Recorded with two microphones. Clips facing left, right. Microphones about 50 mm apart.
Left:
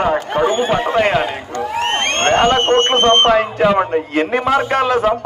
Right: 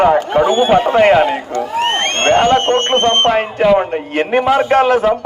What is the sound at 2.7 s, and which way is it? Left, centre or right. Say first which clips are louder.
Speech: left 1 dB; left.